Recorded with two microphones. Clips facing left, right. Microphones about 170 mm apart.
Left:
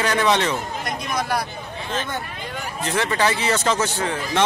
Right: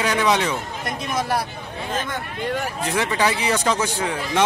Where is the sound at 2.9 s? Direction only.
10° right (ahead or behind).